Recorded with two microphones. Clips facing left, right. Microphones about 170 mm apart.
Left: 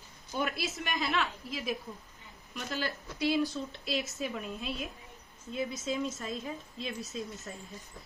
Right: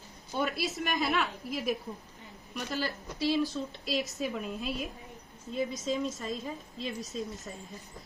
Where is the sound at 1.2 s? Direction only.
50° right (ahead or behind).